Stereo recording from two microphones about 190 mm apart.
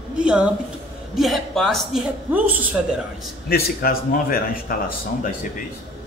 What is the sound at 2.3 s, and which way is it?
Speech, 10° right (ahead or behind).